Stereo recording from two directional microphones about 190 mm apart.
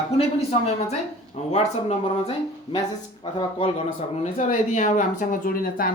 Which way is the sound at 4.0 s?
35° left (ahead or behind).